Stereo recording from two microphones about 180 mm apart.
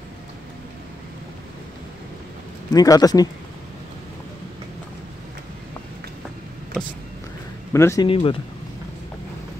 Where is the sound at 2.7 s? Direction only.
20° left (ahead or behind).